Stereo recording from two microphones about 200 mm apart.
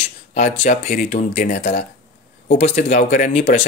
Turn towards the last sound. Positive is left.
turn(degrees=35)  # may be behind; listen again after turning